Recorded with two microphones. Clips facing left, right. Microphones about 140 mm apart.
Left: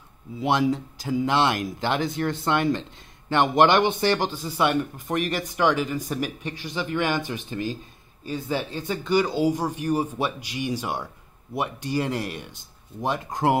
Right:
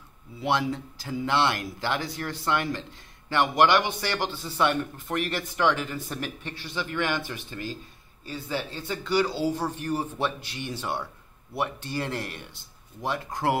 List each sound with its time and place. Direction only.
0.4 s a man's voice: 15° left (ahead or behind)